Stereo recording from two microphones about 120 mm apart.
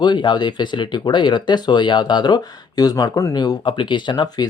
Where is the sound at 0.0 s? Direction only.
40° left (ahead or behind).